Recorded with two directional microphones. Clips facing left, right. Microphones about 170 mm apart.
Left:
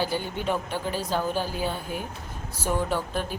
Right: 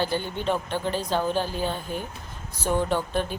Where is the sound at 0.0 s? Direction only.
10° left (ahead or behind).